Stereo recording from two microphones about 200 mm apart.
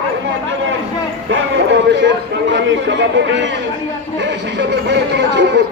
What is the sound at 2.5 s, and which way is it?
Speech, 65° right (ahead or behind).